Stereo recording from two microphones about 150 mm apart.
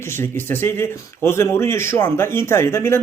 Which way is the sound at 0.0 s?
15° left (ahead or behind).